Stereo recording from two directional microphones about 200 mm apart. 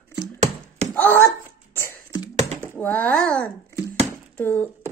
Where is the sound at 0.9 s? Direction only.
10° left (ahead or behind).